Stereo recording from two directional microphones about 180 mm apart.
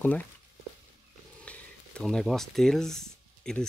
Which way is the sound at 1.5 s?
5° left (ahead or behind).